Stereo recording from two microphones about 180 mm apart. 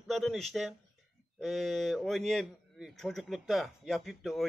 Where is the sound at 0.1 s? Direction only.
Centre (ahead or behind).